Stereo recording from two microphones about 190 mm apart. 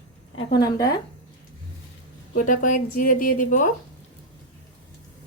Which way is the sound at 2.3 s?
45° left (ahead or behind).